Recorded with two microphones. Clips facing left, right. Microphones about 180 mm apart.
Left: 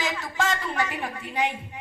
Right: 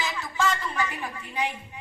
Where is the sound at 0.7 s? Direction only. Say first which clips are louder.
Left 2 dB; 60° left (ahead or behind).